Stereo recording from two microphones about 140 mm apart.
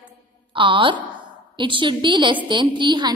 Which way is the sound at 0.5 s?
35° right (ahead or behind).